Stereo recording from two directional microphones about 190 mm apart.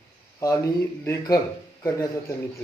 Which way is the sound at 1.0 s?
15° left (ahead or behind).